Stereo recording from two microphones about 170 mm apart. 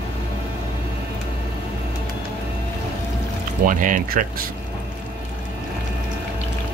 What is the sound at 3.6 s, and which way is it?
Speech, 50° right (ahead or behind).